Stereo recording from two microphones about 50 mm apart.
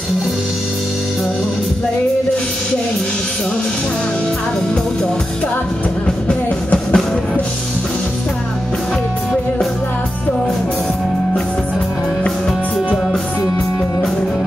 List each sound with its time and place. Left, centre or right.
6.2 s music: left